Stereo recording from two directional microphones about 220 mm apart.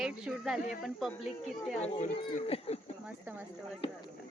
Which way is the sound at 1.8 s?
30° left (ahead or behind).